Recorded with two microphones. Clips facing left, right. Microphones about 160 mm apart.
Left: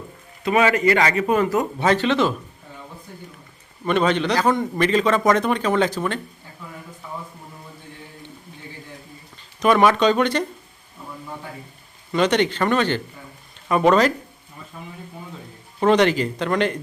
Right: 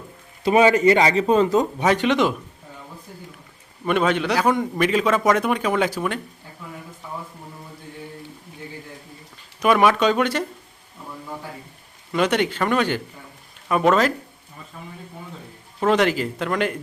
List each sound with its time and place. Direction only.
0.9 s speech: 25° right (ahead or behind)
3.8 s speech: 5° right (ahead or behind)
9.6 s speech: 5° right (ahead or behind)
12.1 s speech: 5° right (ahead or behind)
15.8 s speech: 5° right (ahead or behind)